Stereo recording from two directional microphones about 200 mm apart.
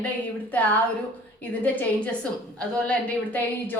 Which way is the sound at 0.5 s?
10° left (ahead or behind).